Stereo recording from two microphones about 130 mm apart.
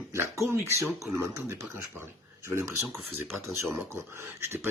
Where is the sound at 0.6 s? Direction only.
20° right (ahead or behind).